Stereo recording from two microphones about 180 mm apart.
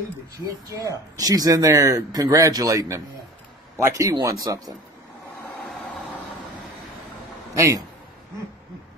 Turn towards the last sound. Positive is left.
turn(degrees=-15)  # may be behind; listen again after turning